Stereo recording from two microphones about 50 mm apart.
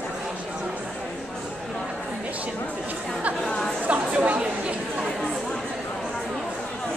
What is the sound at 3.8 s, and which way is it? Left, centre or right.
Chatter, right.